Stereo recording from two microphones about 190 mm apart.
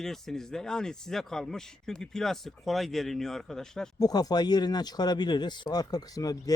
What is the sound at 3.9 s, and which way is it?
Speech, 20° left (ahead or behind).